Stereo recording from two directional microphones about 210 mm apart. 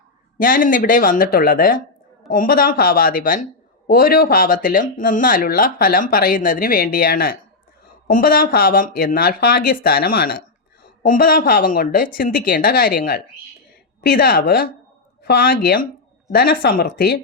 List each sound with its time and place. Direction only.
0.3 s speech: 40° left (ahead or behind)